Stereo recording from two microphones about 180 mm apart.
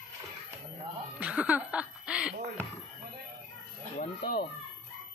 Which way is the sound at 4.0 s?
55° left (ahead or behind).